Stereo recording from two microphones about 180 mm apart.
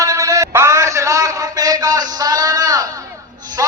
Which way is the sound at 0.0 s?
15° right (ahead or behind).